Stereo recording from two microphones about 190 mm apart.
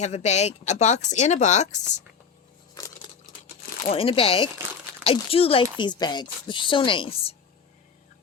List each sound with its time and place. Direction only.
0.0 s speech: 35° left (ahead or behind)
3.9 s a woman's voice: 30° left (ahead or behind)